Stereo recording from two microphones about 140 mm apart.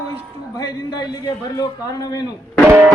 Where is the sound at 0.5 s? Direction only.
25° left (ahead or behind).